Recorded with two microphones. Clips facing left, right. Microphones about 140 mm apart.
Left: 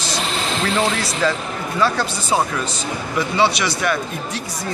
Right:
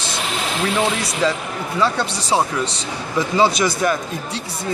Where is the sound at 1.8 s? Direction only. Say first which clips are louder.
Even; 25° right (ahead or behind).